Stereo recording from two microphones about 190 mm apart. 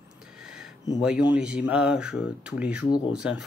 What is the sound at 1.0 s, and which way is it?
Speech, 5° right (ahead or behind).